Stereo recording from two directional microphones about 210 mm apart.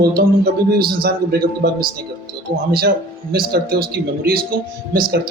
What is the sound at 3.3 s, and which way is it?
A man's voice, 45° right (ahead or behind).